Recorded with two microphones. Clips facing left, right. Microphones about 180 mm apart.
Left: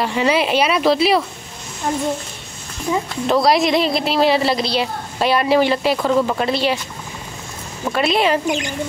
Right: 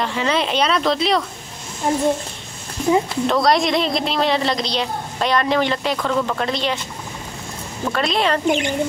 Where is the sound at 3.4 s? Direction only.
5° left (ahead or behind).